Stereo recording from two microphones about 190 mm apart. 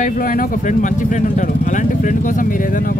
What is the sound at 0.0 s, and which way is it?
Speech, 45° left (ahead or behind).